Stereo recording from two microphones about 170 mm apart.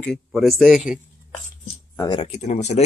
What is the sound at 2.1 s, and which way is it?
Speech, 40° left (ahead or behind).